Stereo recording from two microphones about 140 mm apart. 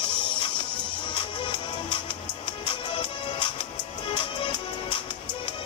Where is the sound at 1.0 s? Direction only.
35° left (ahead or behind).